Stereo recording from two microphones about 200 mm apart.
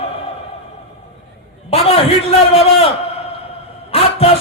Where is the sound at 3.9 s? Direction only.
30° left (ahead or behind).